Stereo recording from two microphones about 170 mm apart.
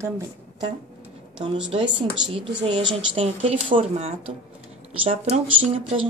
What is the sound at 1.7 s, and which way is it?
Speech, 35° right (ahead or behind).